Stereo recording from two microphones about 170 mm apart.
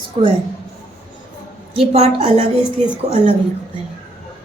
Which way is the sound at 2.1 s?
40° right (ahead or behind).